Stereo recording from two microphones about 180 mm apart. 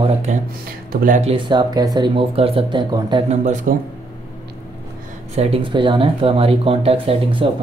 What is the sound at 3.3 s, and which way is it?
Speech, 45° right (ahead or behind).